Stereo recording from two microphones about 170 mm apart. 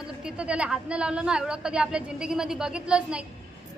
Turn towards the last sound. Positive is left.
turn(degrees=-5)  # may be behind; listen again after turning